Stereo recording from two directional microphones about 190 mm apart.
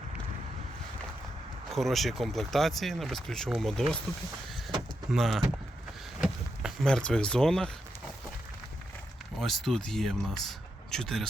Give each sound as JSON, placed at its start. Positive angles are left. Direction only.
{"t": 1.7, "sound": "speech", "side_deg": 0}
{"t": 5.1, "sound": "speech", "side_deg": 0}
{"t": 9.4, "sound": "speech", "side_deg": 0}